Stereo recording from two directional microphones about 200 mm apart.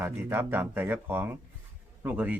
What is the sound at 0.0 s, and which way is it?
Speech, 10° right (ahead or behind).